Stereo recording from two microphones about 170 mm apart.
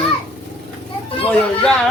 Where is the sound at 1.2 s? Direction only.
5° left (ahead or behind).